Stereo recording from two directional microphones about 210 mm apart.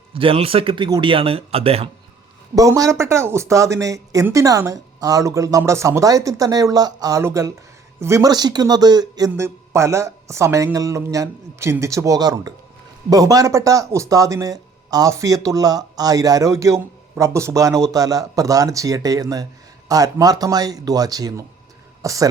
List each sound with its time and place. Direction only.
0.1 s speech: 25° right (ahead or behind)
2.6 s speech: 15° right (ahead or behind)